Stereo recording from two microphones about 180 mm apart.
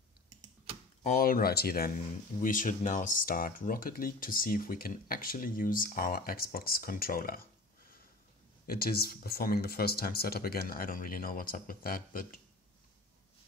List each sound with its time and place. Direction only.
1.0 s speech: 50° left (ahead or behind)
2.4 s speech: 50° left (ahead or behind)
8.6 s speech: 55° left (ahead or behind)